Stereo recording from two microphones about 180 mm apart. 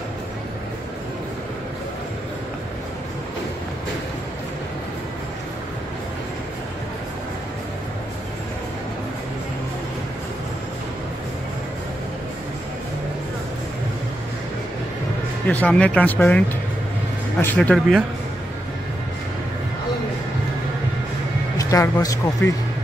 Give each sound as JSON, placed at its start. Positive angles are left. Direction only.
{"t": 15.4, "sound": "speech", "side_deg": 10}
{"t": 21.5, "sound": "speech", "side_deg": 20}